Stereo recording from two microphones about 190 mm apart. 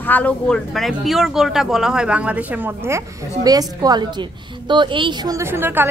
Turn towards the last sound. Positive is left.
turn(degrees=-10)  # may be behind; listen again after turning